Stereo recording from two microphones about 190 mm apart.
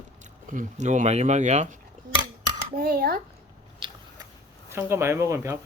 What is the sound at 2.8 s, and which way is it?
Speech, 50° right (ahead or behind).